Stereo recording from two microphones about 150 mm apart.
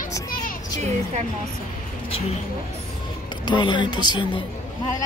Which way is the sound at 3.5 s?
30° left (ahead or behind).